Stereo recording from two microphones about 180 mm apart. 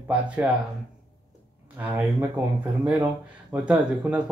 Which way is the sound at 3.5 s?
5° right (ahead or behind).